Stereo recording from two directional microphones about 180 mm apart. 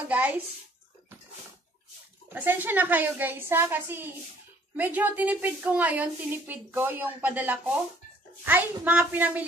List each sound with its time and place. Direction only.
0.1 s a woman's voice: 10° right (ahead or behind)
2.2 s a woman's voice: 10° right (ahead or behind)